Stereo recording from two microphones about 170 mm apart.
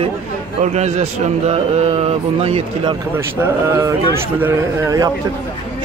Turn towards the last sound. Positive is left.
turn(degrees=-20)  # may be behind; listen again after turning